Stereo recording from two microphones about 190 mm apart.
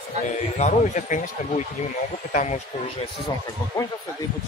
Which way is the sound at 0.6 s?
40° left (ahead or behind).